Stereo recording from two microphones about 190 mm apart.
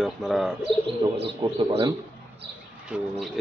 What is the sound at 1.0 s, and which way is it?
Speech, 25° right (ahead or behind).